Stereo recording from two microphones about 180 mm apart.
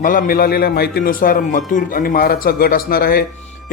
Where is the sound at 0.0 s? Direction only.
50° left (ahead or behind).